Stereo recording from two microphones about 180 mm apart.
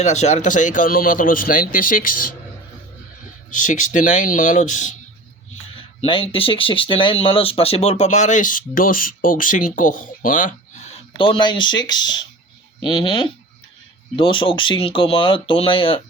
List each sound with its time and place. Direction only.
0.0 s speech: 40° left (ahead or behind)
3.6 s speech: 45° left (ahead or behind)
5.7 s speech: 30° left (ahead or behind); by 10.9 s 45° left (ahead or behind)
11.2 s speech: 25° left (ahead or behind)